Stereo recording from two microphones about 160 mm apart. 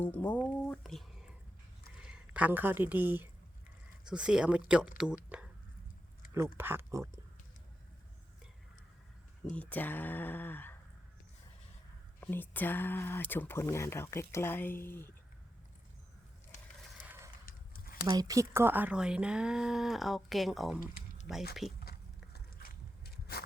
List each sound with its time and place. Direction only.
0.0 s speech: 10° left (ahead or behind); by 5.5 s 5° right (ahead or behind)
6.6 s speech: 15° right (ahead or behind)
9.6 s speech: 10° left (ahead or behind)
12.2 s speech: 10° left (ahead or behind)
17.4 s a sound: 65° left (ahead or behind)
18.0 s speech: 20° right (ahead or behind); by 20.7 s centre (ahead or behind)
20.7 s speech: 60° left (ahead or behind)
21.6 s speech: centre (ahead or behind)
22.3 s walk: 75° left (ahead or behind)